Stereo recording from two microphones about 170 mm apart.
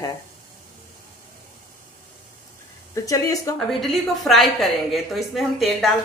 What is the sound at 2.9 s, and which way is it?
Speech, 20° left (ahead or behind).